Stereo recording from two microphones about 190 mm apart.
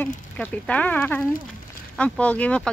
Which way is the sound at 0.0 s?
10° left (ahead or behind).